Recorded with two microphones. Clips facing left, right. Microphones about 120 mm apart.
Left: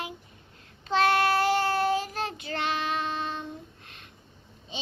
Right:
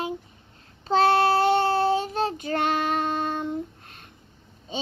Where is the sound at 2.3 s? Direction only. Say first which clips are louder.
Right 6 dB; 45° right (ahead or behind).